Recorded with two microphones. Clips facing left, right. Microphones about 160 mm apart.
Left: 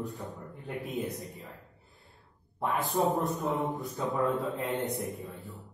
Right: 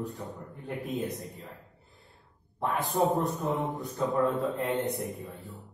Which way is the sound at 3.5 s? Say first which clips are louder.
Even; centre (ahead or behind).